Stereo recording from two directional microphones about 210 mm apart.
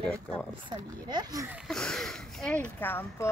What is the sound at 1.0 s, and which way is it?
Speech, 20° right (ahead or behind).